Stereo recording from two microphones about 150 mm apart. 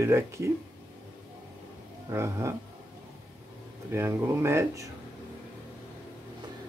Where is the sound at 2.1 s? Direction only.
20° right (ahead or behind).